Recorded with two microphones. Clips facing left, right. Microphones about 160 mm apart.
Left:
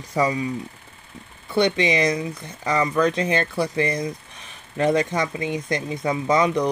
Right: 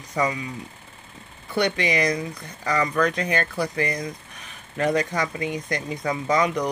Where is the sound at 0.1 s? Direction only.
30° left (ahead or behind).